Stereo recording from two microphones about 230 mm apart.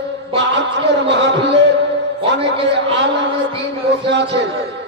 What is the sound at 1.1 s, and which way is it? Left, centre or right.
Speech, right.